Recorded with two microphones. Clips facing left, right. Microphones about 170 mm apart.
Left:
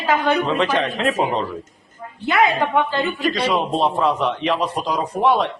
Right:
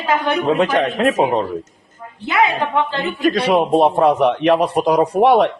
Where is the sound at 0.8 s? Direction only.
50° right (ahead or behind).